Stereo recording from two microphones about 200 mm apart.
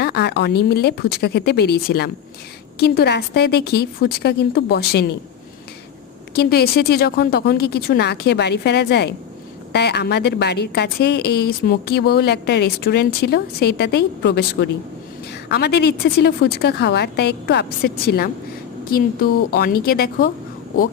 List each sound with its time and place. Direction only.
0.0 s a woman's voice: 55° left (ahead or behind)
6.3 s a woman's voice: 55° left (ahead or behind)